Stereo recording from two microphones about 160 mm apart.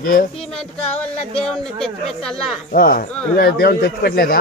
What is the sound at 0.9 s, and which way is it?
Speech, 5° left (ahead or behind).